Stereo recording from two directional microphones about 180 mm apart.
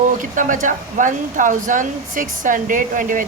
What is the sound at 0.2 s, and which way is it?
Speech, 45° right (ahead or behind).